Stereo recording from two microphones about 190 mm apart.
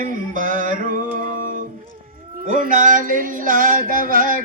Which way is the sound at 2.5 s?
45° right (ahead or behind).